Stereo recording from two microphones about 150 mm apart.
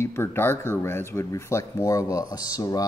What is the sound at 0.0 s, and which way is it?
Speech, 15° left (ahead or behind).